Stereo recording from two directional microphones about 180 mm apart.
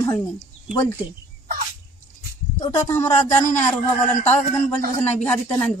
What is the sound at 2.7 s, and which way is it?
Speech, 15° left (ahead or behind).